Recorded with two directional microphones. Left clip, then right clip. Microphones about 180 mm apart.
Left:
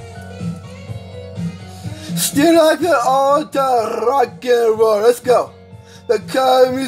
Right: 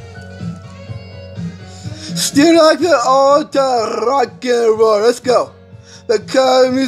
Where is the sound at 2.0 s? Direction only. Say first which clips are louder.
Right 3 dB; 20° right (ahead or behind).